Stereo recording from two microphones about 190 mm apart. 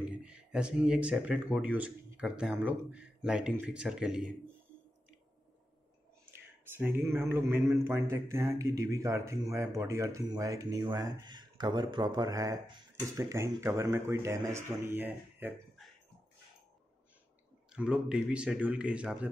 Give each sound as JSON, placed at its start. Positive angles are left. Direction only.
{"t": 0.2, "sound": "speech", "side_deg": -5}
{"t": 6.6, "sound": "a man's voice", "side_deg": -10}
{"t": 17.7, "sound": "speech", "side_deg": -5}